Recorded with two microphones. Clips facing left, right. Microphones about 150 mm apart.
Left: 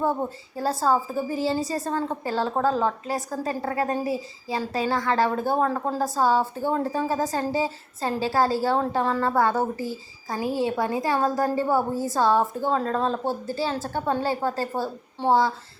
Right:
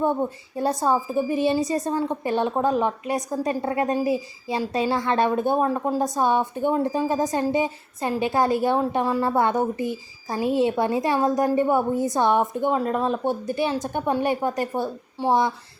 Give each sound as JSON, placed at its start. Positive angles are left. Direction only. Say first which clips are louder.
{"t": 0.5, "sound": "a woman's voice", "louder": "right 1 dB", "side_deg": -20}